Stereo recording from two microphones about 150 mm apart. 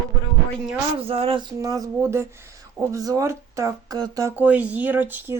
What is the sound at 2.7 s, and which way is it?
Speech, 20° right (ahead or behind).